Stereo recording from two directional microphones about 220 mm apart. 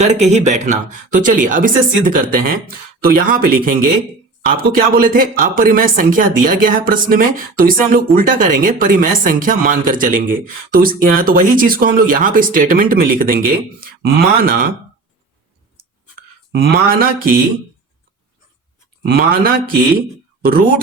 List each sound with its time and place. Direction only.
0.0 s speech: 30° right (ahead or behind)
16.1 s a sound: 45° right (ahead or behind)
19.0 s speech: 40° right (ahead or behind)